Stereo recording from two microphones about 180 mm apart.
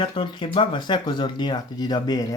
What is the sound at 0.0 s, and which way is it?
Speech, 30° left (ahead or behind).